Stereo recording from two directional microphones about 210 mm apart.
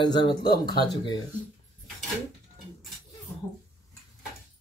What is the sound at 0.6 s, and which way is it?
Speech, 50° left (ahead or behind).